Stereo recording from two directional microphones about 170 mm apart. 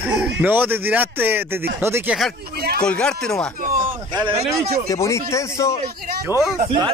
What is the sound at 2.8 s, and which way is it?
Speech, 5° left (ahead or behind).